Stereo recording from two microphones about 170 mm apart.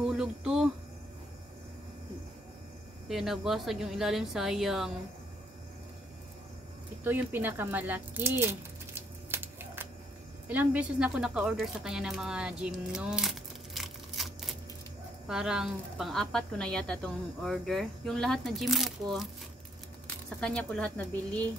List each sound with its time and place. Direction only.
0.0 s a sound: 5° right (ahead or behind)
3.1 s speech: centre (ahead or behind)
7.1 s speech: 10° right (ahead or behind)
9.3 s a sound: 15° right (ahead or behind)
10.5 s a woman's voice: 10° right (ahead or behind)
20.3 s speech: 5° left (ahead or behind)